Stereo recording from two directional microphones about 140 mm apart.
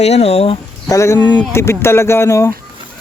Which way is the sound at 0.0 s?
50° left (ahead or behind).